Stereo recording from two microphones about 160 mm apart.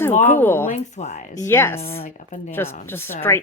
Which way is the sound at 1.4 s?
15° left (ahead or behind).